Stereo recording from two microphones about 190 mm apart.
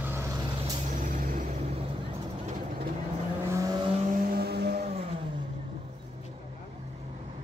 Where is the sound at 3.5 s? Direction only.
15° right (ahead or behind).